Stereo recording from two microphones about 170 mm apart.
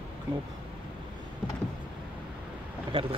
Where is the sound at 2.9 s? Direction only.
30° right (ahead or behind).